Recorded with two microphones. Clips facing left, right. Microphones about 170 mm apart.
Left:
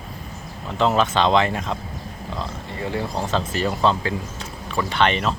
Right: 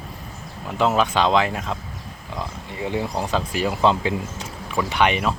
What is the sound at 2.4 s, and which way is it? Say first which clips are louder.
Speech: right 1 dB; 15° right (ahead or behind).